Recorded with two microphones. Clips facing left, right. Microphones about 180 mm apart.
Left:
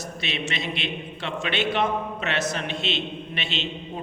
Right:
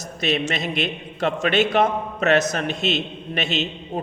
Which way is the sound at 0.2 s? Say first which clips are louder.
Right 9 dB; 45° right (ahead or behind).